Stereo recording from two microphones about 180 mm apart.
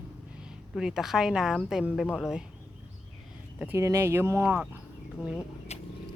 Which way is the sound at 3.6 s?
15° right (ahead or behind).